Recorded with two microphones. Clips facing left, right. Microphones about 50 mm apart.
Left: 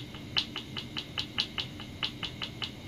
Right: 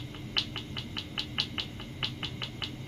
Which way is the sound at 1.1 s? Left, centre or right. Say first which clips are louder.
Even; centre.